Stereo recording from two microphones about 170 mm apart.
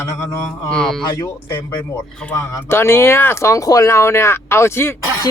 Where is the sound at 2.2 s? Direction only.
10° left (ahead or behind).